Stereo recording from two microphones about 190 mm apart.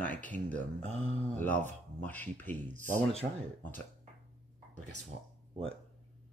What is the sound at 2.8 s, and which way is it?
Speech, 35° right (ahead or behind).